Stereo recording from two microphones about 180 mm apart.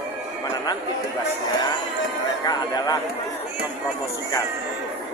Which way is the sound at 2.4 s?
20° left (ahead or behind).